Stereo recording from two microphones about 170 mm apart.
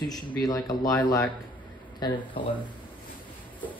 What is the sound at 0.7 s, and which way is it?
Speech, 20° left (ahead or behind).